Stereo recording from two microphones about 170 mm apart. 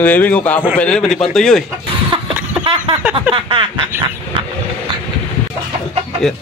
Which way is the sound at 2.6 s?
30° right (ahead or behind).